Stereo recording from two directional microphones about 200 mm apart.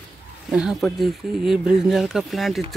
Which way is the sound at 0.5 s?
5° right (ahead or behind).